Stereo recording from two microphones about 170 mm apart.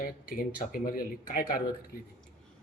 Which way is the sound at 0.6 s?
60° left (ahead or behind).